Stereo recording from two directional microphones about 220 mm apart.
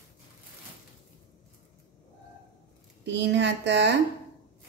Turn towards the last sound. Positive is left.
turn(degrees=-50)  # may be behind; listen again after turning